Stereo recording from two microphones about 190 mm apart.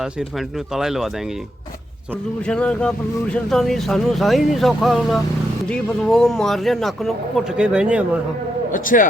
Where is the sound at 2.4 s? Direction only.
5° left (ahead or behind).